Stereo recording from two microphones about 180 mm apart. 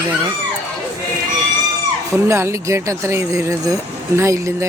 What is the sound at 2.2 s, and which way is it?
Speech, 15° right (ahead or behind).